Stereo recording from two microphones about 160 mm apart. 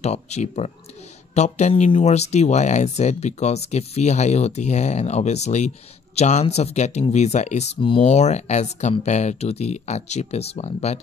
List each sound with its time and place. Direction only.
0.0 s speech: 45° left (ahead or behind)